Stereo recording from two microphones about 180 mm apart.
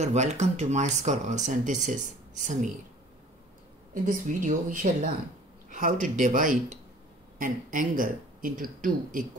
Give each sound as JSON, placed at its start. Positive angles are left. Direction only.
{"t": 0.0, "sound": "speech", "side_deg": -40}
{"t": 3.9, "sound": "speech", "side_deg": -50}